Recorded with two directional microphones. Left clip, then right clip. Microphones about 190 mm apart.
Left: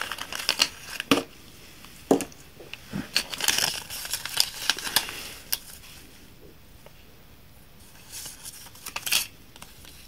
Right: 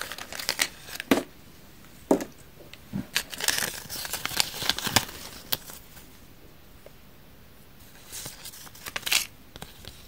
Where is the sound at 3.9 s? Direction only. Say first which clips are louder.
Left 1 dB; 35° right (ahead or behind).